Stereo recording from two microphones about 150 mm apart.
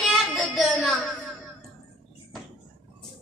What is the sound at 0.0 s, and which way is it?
Child singing, centre (ahead or behind).